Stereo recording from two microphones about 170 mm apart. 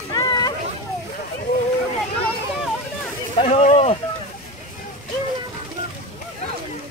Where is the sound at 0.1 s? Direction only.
25° left (ahead or behind).